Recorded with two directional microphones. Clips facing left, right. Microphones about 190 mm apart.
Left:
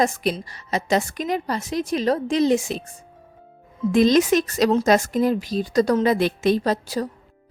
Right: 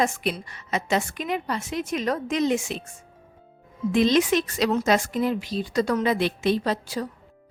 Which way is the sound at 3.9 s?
40° left (ahead or behind).